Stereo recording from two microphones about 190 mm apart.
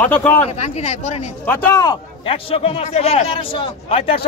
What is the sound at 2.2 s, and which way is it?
A man's voice, 30° left (ahead or behind).